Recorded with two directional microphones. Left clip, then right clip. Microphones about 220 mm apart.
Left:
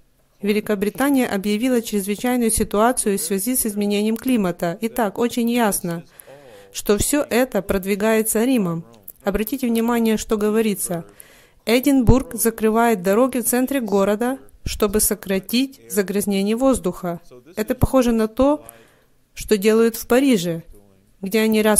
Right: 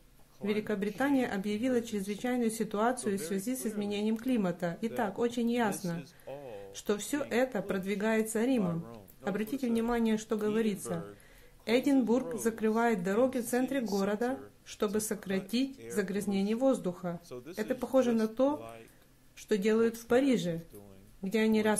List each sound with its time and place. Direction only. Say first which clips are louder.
0.4 s speech: left 12 dB; 45° left (ahead or behind)